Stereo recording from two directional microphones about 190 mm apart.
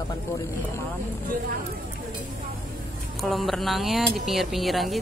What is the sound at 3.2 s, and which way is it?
Speech, centre (ahead or behind).